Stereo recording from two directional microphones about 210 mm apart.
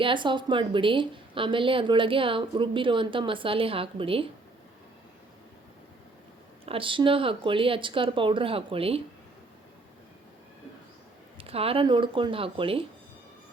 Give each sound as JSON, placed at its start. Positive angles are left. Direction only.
{"t": 0.0, "sound": "a woman's voice", "side_deg": -25}
{"t": 6.7, "sound": "a woman's voice", "side_deg": -25}
{"t": 11.3, "sound": "a woman's voice", "side_deg": -25}